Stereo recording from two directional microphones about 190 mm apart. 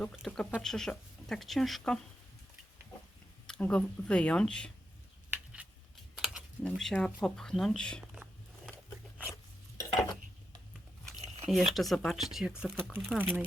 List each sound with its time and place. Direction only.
0.0 s speech: 5° left (ahead or behind)
3.4 s speech: 5° left (ahead or behind)
6.1 s speech: centre (ahead or behind)
8.1 s a sound: 5° right (ahead or behind)
9.3 s stir: 15° left (ahead or behind)
11.7 s speech: centre (ahead or behind)